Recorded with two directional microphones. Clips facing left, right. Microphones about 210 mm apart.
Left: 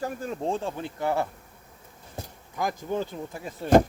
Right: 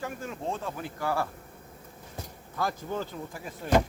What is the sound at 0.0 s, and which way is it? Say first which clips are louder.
Speech: left 5 dB; 35° left (ahead or behind).